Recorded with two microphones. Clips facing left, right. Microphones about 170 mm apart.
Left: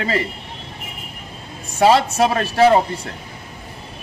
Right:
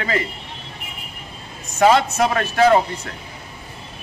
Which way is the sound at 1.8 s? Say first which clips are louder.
Left 1 dB; 30° left (ahead or behind).